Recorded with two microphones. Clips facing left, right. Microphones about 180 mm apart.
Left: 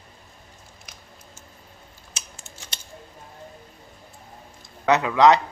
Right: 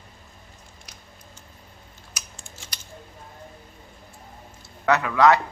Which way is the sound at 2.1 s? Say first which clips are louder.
Even; 25° left (ahead or behind).